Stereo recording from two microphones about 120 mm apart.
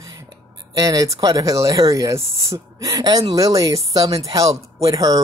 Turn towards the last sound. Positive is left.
turn(degrees=-30)  # may be behind; listen again after turning